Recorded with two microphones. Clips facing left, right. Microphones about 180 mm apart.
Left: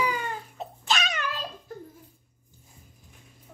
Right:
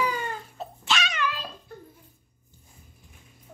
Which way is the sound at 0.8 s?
40° left (ahead or behind).